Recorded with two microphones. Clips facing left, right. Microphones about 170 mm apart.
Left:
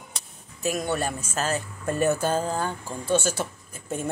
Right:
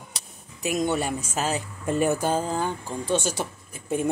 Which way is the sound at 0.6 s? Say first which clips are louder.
Right 2 dB; 20° right (ahead or behind).